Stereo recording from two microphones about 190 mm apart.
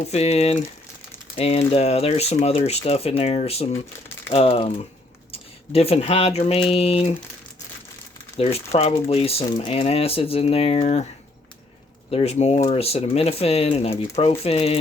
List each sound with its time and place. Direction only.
0.1 s speech: 35° left (ahead or behind)
8.5 s speech: 30° left (ahead or behind)
12.1 s speech: 35° left (ahead or behind)